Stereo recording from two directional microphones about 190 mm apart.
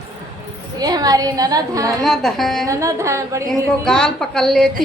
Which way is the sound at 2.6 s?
15° right (ahead or behind).